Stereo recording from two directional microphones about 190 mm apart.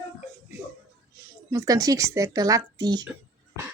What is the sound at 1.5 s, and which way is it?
Speech, 20° right (ahead or behind).